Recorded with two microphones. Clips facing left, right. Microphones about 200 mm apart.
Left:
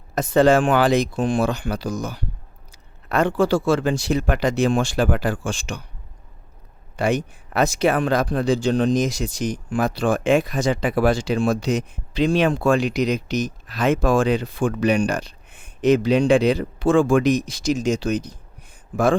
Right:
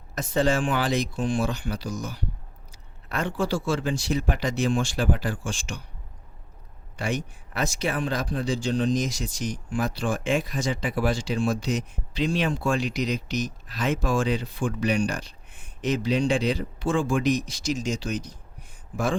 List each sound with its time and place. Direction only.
0.1 s speech: 60° left (ahead or behind)
6.9 s speech: 60° left (ahead or behind)